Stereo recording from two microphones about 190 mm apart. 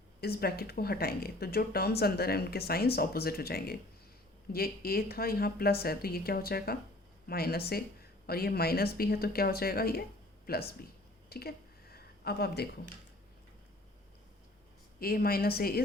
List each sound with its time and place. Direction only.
0.2 s speech: 55° left (ahead or behind)
11.3 s a sound: 55° left (ahead or behind)
14.9 s speech: 50° left (ahead or behind)